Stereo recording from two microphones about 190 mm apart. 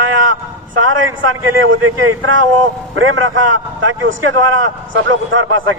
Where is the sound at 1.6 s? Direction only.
90° right.